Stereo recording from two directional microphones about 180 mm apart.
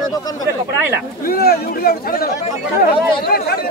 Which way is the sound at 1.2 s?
60° left (ahead or behind).